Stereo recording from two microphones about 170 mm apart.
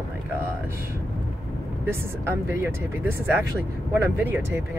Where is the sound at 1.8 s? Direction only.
15° right (ahead or behind).